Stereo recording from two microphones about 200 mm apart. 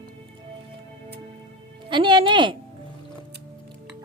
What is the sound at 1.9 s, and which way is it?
Speech, 25° right (ahead or behind).